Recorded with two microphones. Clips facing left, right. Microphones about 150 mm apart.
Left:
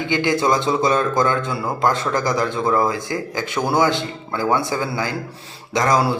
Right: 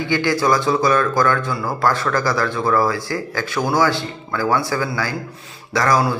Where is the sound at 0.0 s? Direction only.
20° left (ahead or behind).